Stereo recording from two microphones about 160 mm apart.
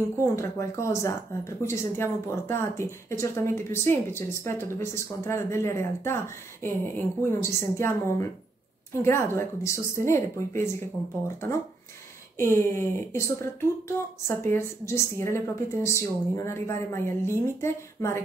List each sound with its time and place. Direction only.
0.2 s a woman's voice: 20° left (ahead or behind)
12.4 s a woman's voice: 15° left (ahead or behind)